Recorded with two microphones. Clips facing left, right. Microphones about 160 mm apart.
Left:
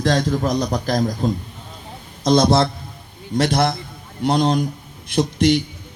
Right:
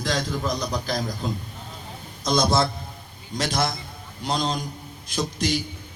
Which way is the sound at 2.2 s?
30° left (ahead or behind).